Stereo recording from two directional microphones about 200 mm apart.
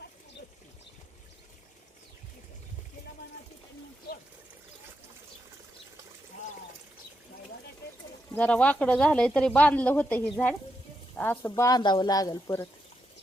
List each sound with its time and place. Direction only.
8.4 s speech: 5° left (ahead or behind)